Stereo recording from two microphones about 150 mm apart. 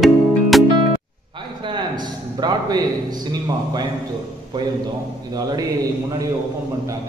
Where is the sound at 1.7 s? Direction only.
30° right (ahead or behind).